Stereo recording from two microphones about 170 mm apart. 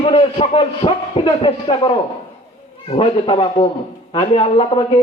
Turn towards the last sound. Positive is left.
turn(degrees=30)  # may be behind; listen again after turning